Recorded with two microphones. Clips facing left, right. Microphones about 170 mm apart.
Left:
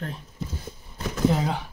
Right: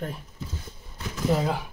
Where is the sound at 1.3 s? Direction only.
Centre (ahead or behind).